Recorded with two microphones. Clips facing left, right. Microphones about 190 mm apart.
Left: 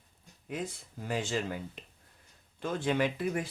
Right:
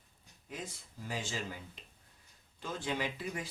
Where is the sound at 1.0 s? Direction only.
60° left (ahead or behind).